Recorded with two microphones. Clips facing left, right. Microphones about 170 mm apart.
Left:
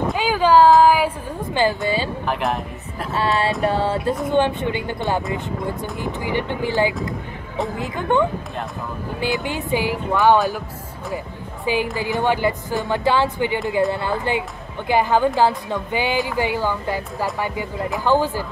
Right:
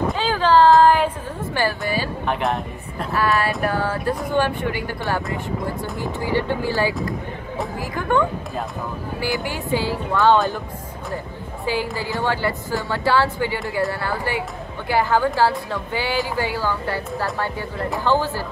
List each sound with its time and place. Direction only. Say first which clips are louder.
0.1 s a sound: left 3 dB; 10° left (ahead or behind)
0.7 s music: even; 5° left (ahead or behind)
1.5 s a woman's voice: left 3 dB; 20° left (ahead or behind)
2.2 s speech: even; centre (ahead or behind)
3.2 s a woman's voice: left 1 dB; 20° left (ahead or behind)
11.6 s a woman's voice: left 2 dB; 20° left (ahead or behind)